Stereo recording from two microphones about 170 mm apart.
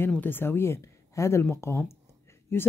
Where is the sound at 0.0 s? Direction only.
10° left (ahead or behind).